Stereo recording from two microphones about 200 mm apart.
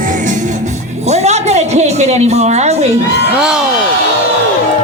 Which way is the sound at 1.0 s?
35° right (ahead or behind).